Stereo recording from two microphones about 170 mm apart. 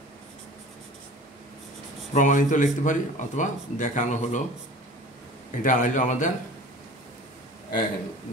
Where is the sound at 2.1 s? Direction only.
45° left (ahead or behind).